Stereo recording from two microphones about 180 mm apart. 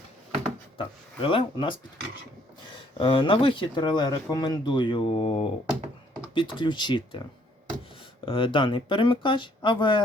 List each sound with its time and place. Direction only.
0.8 s speech: 30° left (ahead or behind)
3.0 s speech: 30° left (ahead or behind)
8.2 s speech: 30° left (ahead or behind)